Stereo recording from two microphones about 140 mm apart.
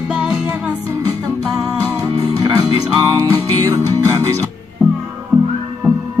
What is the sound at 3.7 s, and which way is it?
Music, 25° right (ahead or behind).